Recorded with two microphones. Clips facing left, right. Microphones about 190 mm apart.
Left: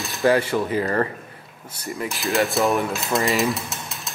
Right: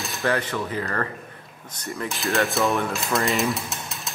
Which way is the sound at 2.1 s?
Centre (ahead or behind).